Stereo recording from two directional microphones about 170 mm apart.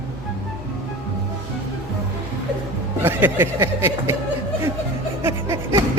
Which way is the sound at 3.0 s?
10° right (ahead or behind).